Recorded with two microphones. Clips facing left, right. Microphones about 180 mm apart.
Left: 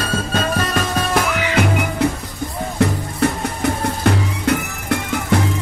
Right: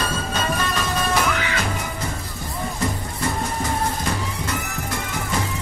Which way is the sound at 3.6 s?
65° left (ahead or behind).